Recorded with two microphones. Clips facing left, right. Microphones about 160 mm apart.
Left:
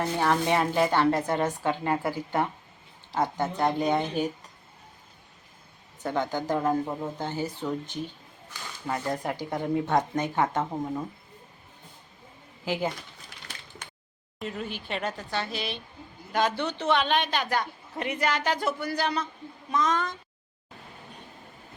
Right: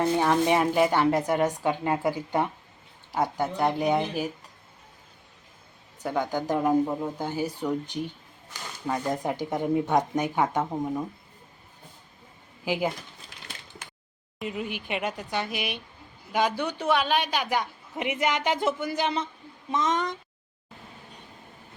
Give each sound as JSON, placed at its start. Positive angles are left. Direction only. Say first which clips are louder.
{"t": 0.0, "sound": "a woman's voice", "louder": "right 3 dB", "side_deg": -15}
{"t": 6.0, "sound": "a woman's voice", "louder": "right 1 dB", "side_deg": -10}
{"t": 12.6, "sound": "a woman's voice", "louder": "right 2 dB", "side_deg": -10}
{"t": 14.3, "sound": "a woman's voice", "louder": "right 2 dB", "side_deg": -10}